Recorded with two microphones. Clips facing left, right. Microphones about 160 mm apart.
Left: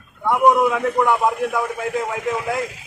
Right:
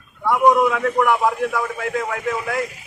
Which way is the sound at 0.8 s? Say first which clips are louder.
Even; 20° left (ahead or behind).